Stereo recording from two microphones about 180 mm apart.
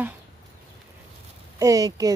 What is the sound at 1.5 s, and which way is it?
Speech, 20° right (ahead or behind).